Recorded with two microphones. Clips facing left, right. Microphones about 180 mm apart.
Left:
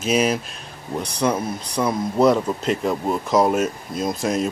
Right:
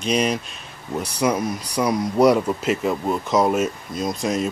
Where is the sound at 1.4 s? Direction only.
30° left (ahead or behind).